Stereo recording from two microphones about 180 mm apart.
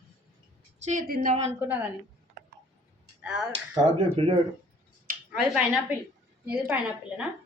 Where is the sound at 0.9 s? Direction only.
50° right (ahead or behind).